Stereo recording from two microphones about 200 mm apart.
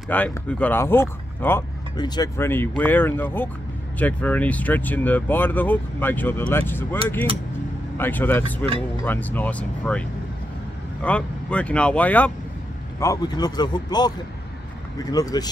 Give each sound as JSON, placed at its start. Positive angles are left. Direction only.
{"t": 0.1, "sound": "speech", "side_deg": 10}
{"t": 8.0, "sound": "speech", "side_deg": 10}
{"t": 11.1, "sound": "speech", "side_deg": 5}
{"t": 13.0, "sound": "speech", "side_deg": 20}